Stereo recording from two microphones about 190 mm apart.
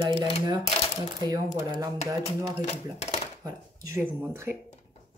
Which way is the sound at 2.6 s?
35° left (ahead or behind).